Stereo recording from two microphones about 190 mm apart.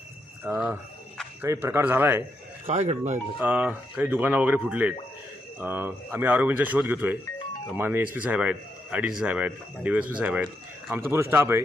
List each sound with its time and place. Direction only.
0.4 s speech: 10° right (ahead or behind)
2.6 s speech: 35° right (ahead or behind)
3.3 s speech: 5° right (ahead or behind)